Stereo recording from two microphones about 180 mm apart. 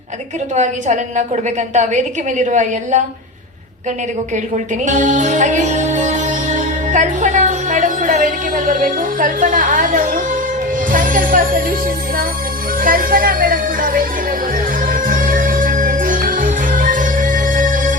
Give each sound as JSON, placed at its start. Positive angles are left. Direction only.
{"t": 0.5, "sound": "a woman's voice", "side_deg": -40}
{"t": 4.5, "sound": "music", "side_deg": -40}
{"t": 10.9, "sound": "speech", "side_deg": -50}
{"t": 12.8, "sound": "music", "side_deg": -50}